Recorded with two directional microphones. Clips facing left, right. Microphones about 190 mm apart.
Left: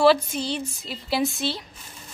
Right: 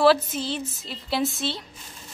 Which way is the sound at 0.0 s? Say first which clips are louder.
Left 1 dB; centre (ahead or behind).